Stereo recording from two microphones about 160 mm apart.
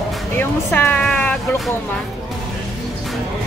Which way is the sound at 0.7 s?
10° left (ahead or behind).